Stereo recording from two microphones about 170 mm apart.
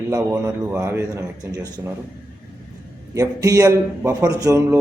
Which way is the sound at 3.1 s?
20° right (ahead or behind).